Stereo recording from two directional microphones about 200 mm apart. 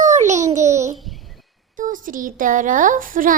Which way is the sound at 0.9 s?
Centre (ahead or behind).